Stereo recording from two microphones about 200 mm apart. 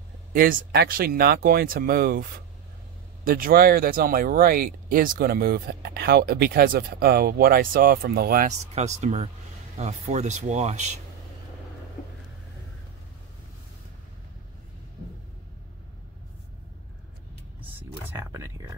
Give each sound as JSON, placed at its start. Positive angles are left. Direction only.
{"t": 0.3, "sound": "speech", "side_deg": -45}
{"t": 3.3, "sound": "speech", "side_deg": -45}
{"t": 18.1, "sound": "a sound", "side_deg": -15}